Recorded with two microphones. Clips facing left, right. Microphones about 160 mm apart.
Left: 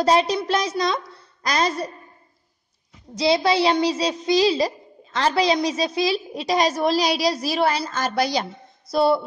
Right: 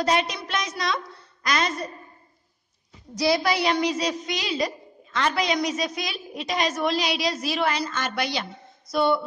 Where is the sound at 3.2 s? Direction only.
25° left (ahead or behind).